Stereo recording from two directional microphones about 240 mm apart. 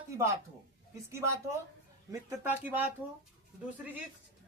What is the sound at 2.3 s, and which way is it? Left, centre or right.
Speech, centre.